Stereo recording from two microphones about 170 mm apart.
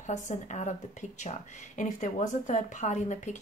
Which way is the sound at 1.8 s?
45° left (ahead or behind).